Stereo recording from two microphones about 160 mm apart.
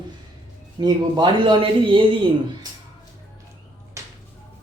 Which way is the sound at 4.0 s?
20° right (ahead or behind).